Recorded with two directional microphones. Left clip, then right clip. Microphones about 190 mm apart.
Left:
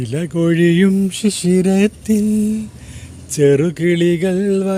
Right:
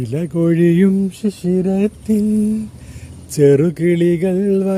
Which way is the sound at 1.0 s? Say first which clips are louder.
Left 3 dB; 5° left (ahead or behind).